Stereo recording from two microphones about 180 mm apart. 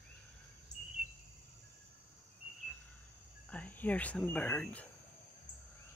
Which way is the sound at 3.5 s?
10° left (ahead or behind).